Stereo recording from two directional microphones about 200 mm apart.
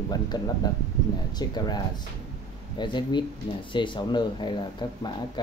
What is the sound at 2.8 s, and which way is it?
Speech, 25° left (ahead or behind).